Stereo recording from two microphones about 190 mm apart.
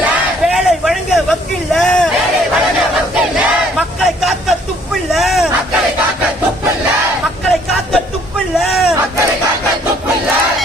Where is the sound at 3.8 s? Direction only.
Centre (ahead or behind).